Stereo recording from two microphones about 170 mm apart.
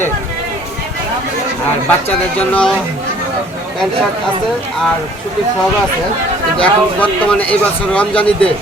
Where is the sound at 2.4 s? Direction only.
5° left (ahead or behind).